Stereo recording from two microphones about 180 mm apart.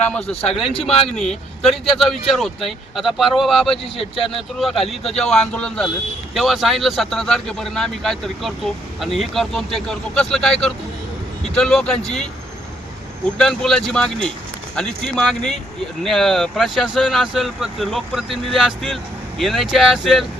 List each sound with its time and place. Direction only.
0.1 s speech: 5° left (ahead or behind)
0.4 s speech: 30° left (ahead or behind)
1.1 s speech: centre (ahead or behind)
3.9 s speech: 30° left (ahead or behind)
4.5 s speech: centre (ahead or behind)
13.4 s speech: 5° left (ahead or behind)